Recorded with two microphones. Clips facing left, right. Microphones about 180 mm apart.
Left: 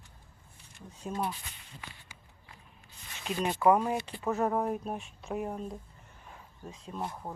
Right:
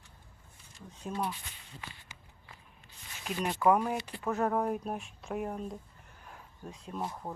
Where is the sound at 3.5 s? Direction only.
10° left (ahead or behind).